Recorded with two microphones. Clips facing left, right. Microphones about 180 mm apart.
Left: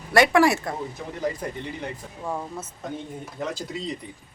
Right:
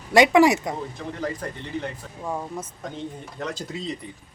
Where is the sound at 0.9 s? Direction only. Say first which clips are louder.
Left 1 dB; 10° left (ahead or behind).